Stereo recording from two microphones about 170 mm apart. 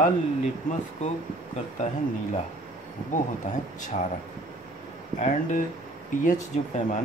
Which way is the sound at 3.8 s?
45° left (ahead or behind).